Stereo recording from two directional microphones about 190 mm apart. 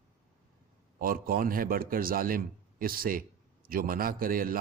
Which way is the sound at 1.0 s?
50° right (ahead or behind).